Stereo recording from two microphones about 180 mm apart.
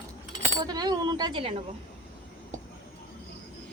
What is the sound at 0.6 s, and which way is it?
Speech, 20° right (ahead or behind).